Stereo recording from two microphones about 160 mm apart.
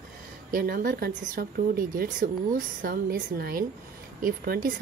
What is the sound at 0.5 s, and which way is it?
Speech, 65° right (ahead or behind).